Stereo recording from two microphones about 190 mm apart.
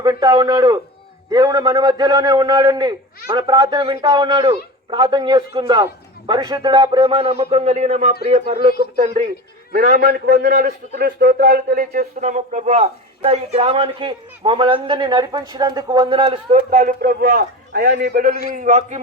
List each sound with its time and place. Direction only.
0.0 s a man's voice: 20° right (ahead or behind); by 10.4 s 55° right (ahead or behind)
10.4 s speech: 40° right (ahead or behind)
10.9 s speech: 50° right (ahead or behind); by 16.9 s 35° right (ahead or behind)
17.0 s a man's voice: 50° right (ahead or behind)